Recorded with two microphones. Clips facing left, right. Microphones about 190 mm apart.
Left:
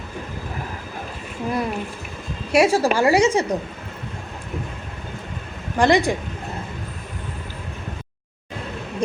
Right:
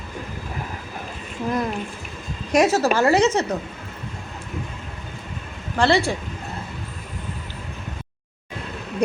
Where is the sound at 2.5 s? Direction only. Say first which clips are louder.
Left 1 dB; 10° left (ahead or behind).